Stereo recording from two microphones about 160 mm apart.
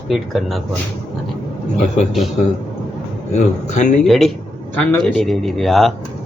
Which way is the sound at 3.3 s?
50° left (ahead or behind).